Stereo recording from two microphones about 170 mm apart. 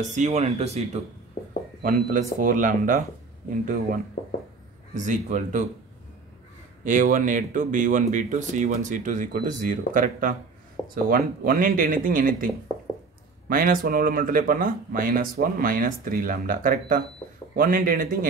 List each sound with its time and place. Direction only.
0.0 s speech: 45° right (ahead or behind)
1.8 s speech: 55° right (ahead or behind)
6.8 s speech: 50° right (ahead or behind)
13.5 s speech: 55° right (ahead or behind)